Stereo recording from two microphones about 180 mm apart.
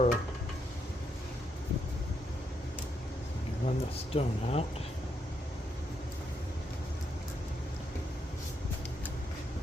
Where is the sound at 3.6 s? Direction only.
35° left (ahead or behind).